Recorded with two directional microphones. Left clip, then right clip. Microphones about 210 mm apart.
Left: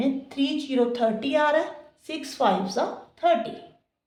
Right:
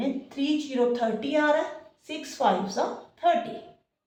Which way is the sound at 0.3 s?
45° left (ahead or behind).